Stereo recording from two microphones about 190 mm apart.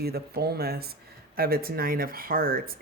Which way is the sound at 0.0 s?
55° right (ahead or behind).